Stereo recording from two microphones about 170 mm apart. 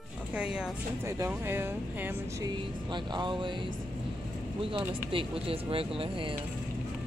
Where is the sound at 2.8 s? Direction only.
25° right (ahead or behind).